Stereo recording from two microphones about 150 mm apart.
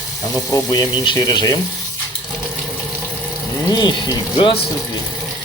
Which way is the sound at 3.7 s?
25° left (ahead or behind).